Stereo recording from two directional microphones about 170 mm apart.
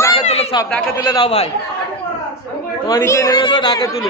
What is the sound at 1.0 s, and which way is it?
Speech, 25° left (ahead or behind).